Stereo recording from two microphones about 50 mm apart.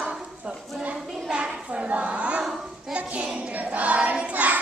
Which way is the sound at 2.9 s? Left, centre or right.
Right.